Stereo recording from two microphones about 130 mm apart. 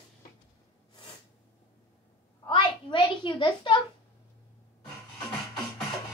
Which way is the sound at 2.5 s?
40° left (ahead or behind).